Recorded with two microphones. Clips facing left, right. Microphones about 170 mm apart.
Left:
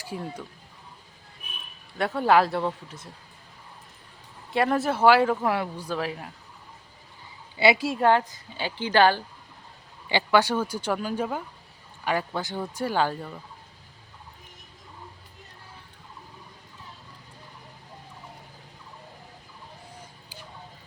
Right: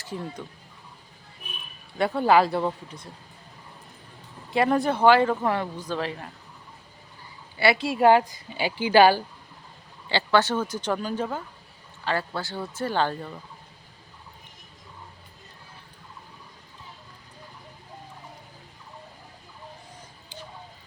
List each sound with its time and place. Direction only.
0.0 s speech: 10° left (ahead or behind)
2.0 s speech: centre (ahead or behind)
4.5 s speech: centre (ahead or behind)
7.6 s speech: 20° left (ahead or behind)
7.9 s a woman's voice: 10° right (ahead or behind)
10.1 s speech: 15° left (ahead or behind)